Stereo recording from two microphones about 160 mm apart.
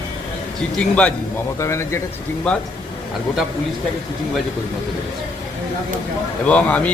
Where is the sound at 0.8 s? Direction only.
10° left (ahead or behind).